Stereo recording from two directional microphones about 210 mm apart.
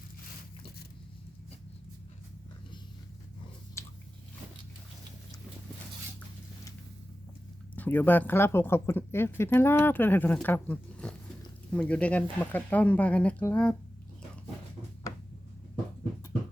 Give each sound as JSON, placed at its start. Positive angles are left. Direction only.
{"t": 7.8, "sound": "speech", "side_deg": 10}